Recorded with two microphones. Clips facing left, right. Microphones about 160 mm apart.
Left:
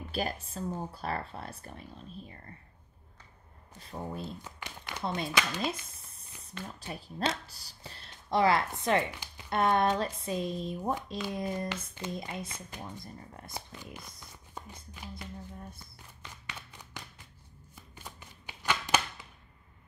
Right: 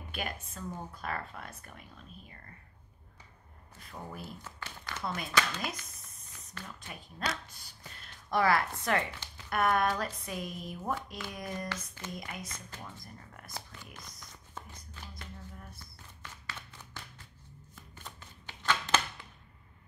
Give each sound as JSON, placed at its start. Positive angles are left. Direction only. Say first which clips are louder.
{"t": 0.1, "sound": "speech", "louder": "left 5 dB", "side_deg": 35}
{"t": 3.8, "sound": "speech", "louder": "left 5 dB", "side_deg": 25}
{"t": 5.0, "sound": "speech", "louder": "left 1 dB", "side_deg": 25}
{"t": 9.5, "sound": "speech", "louder": "left 2 dB", "side_deg": 25}
{"t": 14.5, "sound": "a sound", "louder": "left 2 dB", "side_deg": 15}
{"t": 16.2, "sound": "clapping", "louder": "even", "side_deg": 15}
{"t": 17.7, "sound": "shuffling cards", "louder": "left 1 dB", "side_deg": 15}